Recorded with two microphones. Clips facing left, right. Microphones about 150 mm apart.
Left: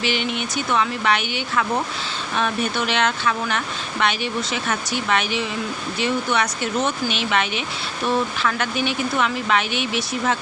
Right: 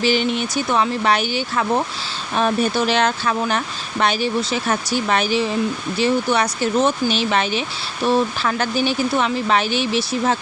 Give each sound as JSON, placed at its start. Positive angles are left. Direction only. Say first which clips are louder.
{"t": 0.0, "sound": "speech", "louder": "right 5 dB", "side_deg": -35}